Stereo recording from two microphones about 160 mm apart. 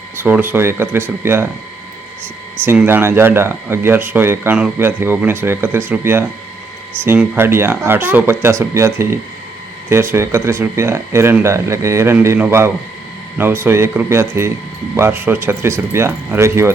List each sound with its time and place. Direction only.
0.2 s speech: 10° right (ahead or behind)
2.6 s speech: 15° right (ahead or behind)